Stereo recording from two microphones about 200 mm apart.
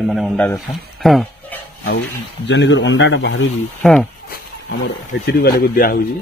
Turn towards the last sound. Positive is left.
turn(degrees=45)  # may be behind; listen again after turning